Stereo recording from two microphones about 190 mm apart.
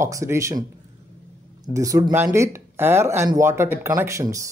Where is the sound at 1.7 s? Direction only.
15° right (ahead or behind).